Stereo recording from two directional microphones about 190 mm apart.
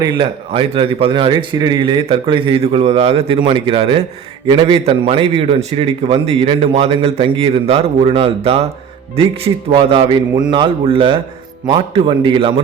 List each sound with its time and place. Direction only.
0.0 s a man's voice: 25° right (ahead or behind)